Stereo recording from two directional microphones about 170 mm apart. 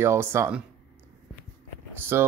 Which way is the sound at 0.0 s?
15° right (ahead or behind).